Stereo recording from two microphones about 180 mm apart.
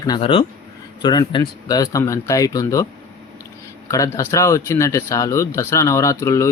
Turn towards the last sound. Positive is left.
turn(degrees=15)  # may be behind; listen again after turning